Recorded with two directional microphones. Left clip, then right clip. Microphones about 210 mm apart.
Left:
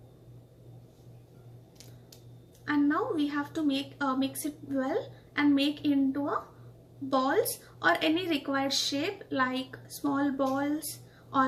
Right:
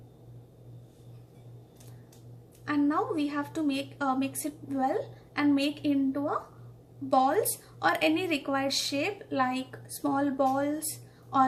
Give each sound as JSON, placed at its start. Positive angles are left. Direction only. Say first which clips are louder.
{"t": 2.6, "sound": "a woman's voice", "louder": "even", "side_deg": -20}